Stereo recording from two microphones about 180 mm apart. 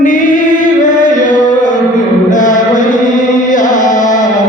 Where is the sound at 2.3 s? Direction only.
45° left (ahead or behind).